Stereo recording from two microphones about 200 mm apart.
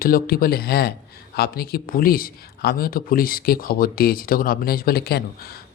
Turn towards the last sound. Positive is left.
turn(degrees=50)  # may be behind; listen again after turning